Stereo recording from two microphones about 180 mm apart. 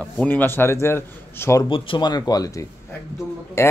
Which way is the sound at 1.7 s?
30° left (ahead or behind).